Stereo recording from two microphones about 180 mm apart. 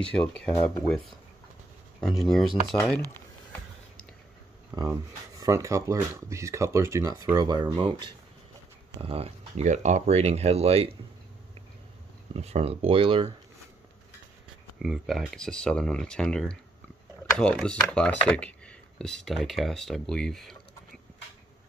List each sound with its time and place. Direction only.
0.0 s speech: 5° left (ahead or behind)
2.0 s speech: 5° left (ahead or behind)
4.6 s a sound: 20° right (ahead or behind)
5.4 s speech: 20° right (ahead or behind); by 11.0 s 35° right (ahead or behind)
12.4 s speech: 35° right (ahead or behind)
14.8 s speech: centre (ahead or behind)